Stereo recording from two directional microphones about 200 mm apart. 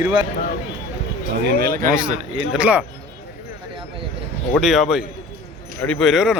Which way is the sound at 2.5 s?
5° right (ahead or behind).